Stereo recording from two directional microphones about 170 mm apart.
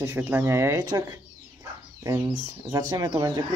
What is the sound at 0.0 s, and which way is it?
Speech, 10° right (ahead or behind).